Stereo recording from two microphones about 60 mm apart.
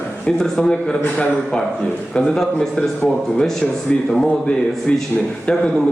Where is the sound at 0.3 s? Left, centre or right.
Centre.